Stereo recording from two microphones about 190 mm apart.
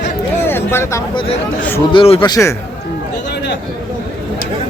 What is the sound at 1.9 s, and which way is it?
Speech, 25° left (ahead or behind).